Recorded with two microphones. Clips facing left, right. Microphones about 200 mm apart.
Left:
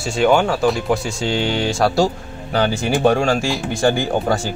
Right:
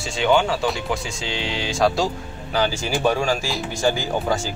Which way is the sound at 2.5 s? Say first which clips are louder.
Left 4 dB; 60° left (ahead or behind).